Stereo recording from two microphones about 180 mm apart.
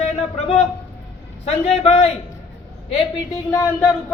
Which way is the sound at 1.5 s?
35° left (ahead or behind).